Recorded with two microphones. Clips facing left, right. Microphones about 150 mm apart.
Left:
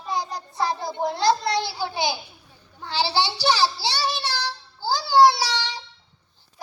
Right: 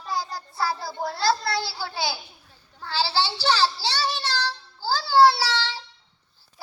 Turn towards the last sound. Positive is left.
turn(degrees=15)  # may be behind; listen again after turning